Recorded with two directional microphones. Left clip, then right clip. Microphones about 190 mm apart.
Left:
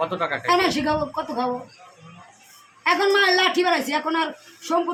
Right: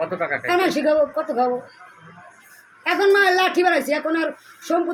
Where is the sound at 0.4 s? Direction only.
15° left (ahead or behind).